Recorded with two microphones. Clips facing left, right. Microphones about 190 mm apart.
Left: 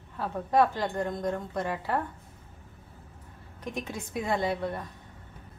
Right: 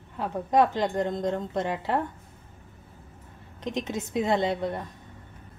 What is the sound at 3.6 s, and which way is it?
A woman's voice, 20° right (ahead or behind).